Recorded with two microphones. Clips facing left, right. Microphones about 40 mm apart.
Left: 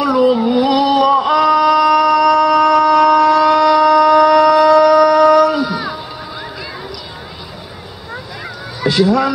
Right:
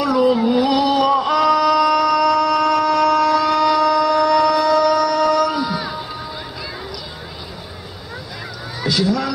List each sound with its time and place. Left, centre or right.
0.0 s male singing: centre
8.8 s speech: left